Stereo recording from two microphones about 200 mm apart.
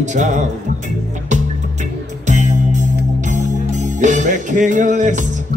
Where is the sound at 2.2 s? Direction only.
35° right (ahead or behind).